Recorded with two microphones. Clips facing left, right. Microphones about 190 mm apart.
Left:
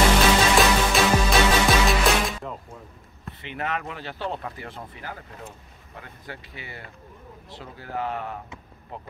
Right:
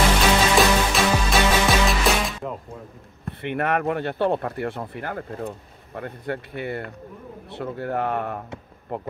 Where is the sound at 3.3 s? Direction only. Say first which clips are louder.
Right 7 dB; 60° right (ahead or behind).